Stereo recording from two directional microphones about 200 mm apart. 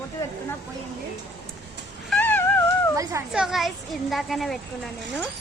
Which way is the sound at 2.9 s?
15° right (ahead or behind).